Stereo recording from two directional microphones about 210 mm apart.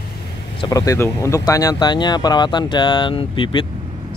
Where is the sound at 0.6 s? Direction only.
15° left (ahead or behind).